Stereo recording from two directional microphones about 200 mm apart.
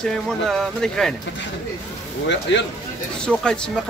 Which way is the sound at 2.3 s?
60° left (ahead or behind).